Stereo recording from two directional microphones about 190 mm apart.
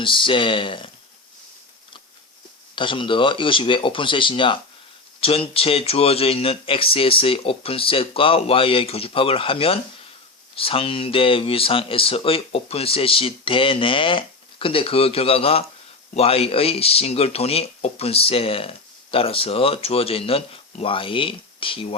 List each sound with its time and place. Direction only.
0.0 s speech: 25° left (ahead or behind)
2.7 s speech: 25° left (ahead or behind)